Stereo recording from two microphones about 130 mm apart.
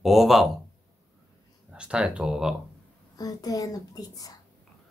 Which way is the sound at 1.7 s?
5° right (ahead or behind).